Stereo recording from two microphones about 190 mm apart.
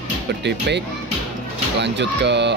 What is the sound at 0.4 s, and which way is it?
Speech, 65° right (ahead or behind).